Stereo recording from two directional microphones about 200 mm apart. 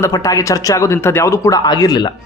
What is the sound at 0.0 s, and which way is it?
Speech, 15° left (ahead or behind).